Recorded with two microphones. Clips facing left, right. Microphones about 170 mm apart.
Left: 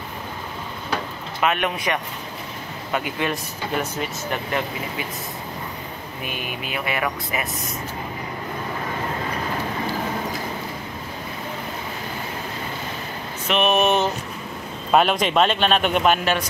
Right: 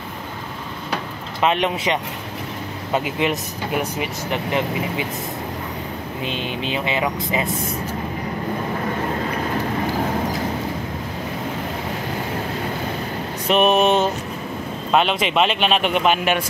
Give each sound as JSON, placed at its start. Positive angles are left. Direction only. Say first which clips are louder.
{"t": 1.4, "sound": "speech", "louder": "right 3 dB", "side_deg": -25}
{"t": 6.2, "sound": "speech", "louder": "right 5 dB", "side_deg": -25}
{"t": 13.5, "sound": "speech", "louder": "right 3 dB", "side_deg": -35}
{"t": 14.9, "sound": "a man's voice", "louder": "left 1 dB", "side_deg": 5}